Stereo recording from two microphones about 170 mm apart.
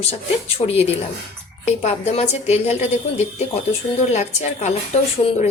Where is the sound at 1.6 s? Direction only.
40° left (ahead or behind).